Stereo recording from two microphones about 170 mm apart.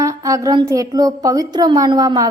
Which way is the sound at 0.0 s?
20° right (ahead or behind).